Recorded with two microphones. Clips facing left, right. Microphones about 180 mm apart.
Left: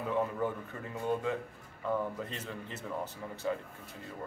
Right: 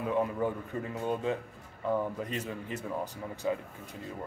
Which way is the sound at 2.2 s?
10° right (ahead or behind).